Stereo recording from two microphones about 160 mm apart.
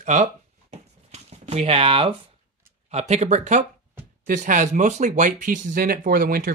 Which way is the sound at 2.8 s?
45° right (ahead or behind).